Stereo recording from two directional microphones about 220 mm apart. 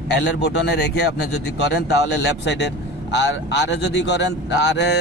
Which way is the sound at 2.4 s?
50° left (ahead or behind).